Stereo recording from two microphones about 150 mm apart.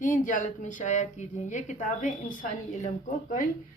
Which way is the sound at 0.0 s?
60° left (ahead or behind).